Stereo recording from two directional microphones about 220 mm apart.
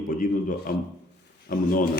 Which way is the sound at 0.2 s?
40° left (ahead or behind).